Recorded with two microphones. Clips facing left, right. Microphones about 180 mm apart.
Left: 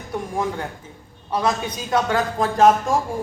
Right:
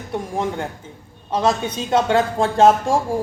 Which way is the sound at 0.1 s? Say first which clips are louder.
Right 2 dB; 25° right (ahead or behind).